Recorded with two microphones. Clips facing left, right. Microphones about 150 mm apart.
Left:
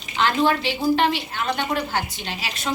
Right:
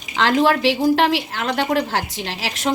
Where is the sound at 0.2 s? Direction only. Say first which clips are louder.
Right 4 dB; 90° right.